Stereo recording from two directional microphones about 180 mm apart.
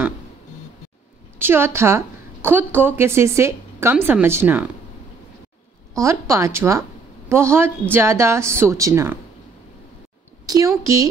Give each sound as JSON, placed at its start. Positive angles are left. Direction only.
{"t": 1.4, "sound": "a woman's voice", "side_deg": -10}
{"t": 5.9, "sound": "a woman's voice", "side_deg": -15}
{"t": 10.4, "sound": "a woman's voice", "side_deg": -20}